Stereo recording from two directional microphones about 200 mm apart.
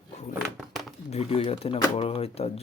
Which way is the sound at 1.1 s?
30° left (ahead or behind).